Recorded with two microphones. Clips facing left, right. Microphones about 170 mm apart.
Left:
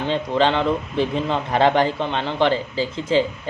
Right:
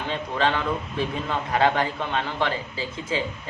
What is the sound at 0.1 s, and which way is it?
A man's voice, 30° left (ahead or behind).